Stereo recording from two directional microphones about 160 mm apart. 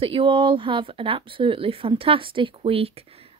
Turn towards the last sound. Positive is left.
turn(degrees=-40)  # may be behind; listen again after turning